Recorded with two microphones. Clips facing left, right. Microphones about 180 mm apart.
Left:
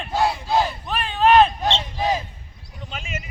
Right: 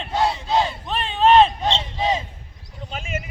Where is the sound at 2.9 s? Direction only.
45° right (ahead or behind).